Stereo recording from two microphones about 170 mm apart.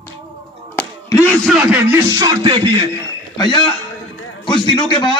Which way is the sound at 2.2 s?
25° right (ahead or behind).